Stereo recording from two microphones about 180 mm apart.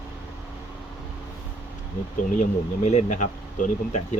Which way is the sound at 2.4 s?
40° left (ahead or behind).